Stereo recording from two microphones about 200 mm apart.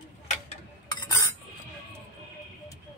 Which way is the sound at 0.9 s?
20° left (ahead or behind).